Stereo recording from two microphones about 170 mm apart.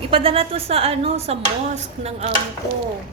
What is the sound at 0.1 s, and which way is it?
A woman's voice, 35° right (ahead or behind).